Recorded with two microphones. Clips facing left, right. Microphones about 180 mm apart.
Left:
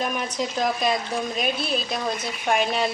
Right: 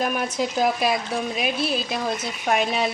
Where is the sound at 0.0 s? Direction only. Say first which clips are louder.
Right 2 dB; 5° right (ahead or behind).